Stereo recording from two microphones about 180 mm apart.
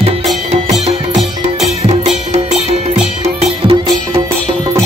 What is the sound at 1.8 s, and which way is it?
Music, 30° right (ahead or behind).